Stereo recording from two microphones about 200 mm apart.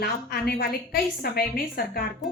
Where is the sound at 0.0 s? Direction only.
50° left (ahead or behind).